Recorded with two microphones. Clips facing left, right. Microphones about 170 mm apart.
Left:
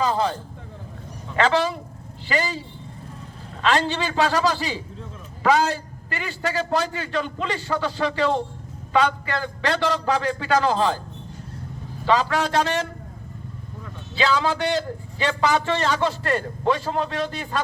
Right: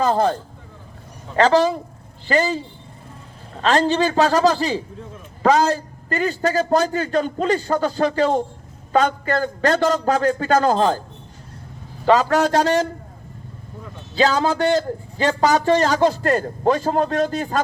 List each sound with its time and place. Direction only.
0.0 s a man's voice: 50° right (ahead or behind)
1.4 s a man's voice: 40° right (ahead or behind)
3.6 s a man's voice: 45° right (ahead or behind)
12.0 s a man's voice: 45° right (ahead or behind)
14.2 s a man's voice: 45° right (ahead or behind)